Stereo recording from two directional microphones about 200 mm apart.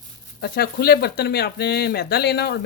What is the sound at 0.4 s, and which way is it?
Speech, 50° left (ahead or behind).